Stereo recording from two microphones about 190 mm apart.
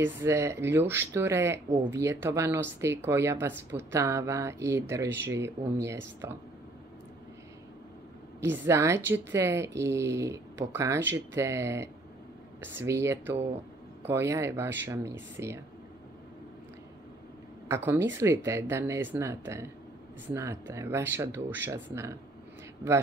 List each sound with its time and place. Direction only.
0.2 s speech: 15° right (ahead or behind)
8.6 s speech: 15° right (ahead or behind)
17.6 s speech: 10° right (ahead or behind)